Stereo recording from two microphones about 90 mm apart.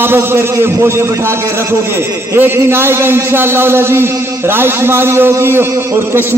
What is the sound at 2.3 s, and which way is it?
A man's voice, 25° right (ahead or behind).